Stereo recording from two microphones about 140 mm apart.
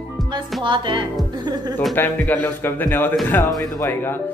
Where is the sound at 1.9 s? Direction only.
15° left (ahead or behind).